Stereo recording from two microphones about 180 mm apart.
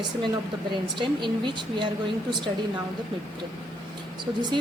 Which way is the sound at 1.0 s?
25° right (ahead or behind).